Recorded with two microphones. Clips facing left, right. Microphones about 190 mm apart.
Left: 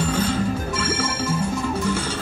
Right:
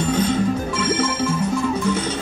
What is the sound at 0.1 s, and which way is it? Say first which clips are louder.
Music: right 3 dB; 5° left (ahead or behind).